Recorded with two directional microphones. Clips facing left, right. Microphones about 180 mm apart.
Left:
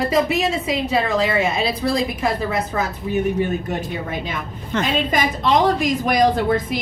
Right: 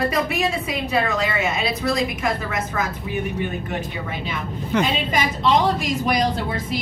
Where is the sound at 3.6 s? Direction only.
45° left (ahead or behind).